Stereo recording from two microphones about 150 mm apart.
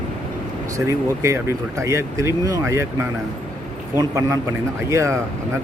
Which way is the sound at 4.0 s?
20° right (ahead or behind).